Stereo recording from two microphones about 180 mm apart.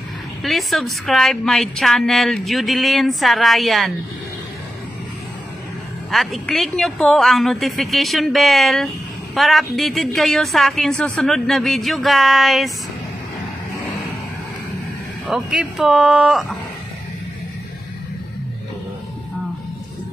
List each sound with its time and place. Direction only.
0.4 s a woman's voice: centre (ahead or behind)
6.1 s a woman's voice: centre (ahead or behind)
15.2 s a woman's voice: 5° right (ahead or behind)